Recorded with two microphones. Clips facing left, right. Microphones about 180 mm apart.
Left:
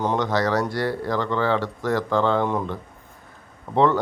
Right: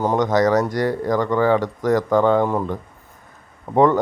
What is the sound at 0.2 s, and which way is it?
Speech, 20° right (ahead or behind).